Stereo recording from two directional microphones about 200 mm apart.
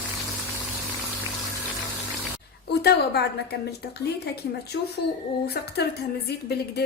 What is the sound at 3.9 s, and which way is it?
A woman's voice, 55° left (ahead or behind).